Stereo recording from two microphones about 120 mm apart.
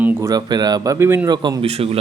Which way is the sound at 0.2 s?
30° right (ahead or behind).